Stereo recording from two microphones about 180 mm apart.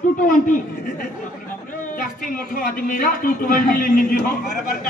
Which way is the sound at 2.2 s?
55° left (ahead or behind).